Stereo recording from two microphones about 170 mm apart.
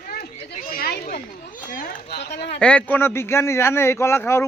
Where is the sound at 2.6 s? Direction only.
10° left (ahead or behind).